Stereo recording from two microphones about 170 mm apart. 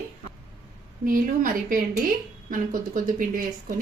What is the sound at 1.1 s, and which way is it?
A woman's voice, 55° right (ahead or behind).